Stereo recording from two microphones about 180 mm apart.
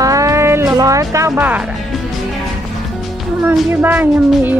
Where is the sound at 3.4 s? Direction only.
5° right (ahead or behind).